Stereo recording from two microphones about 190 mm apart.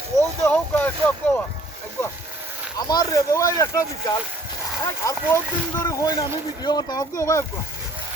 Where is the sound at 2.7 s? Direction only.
20° left (ahead or behind).